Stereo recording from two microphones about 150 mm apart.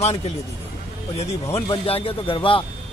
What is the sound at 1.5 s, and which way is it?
A man's voice, 40° left (ahead or behind).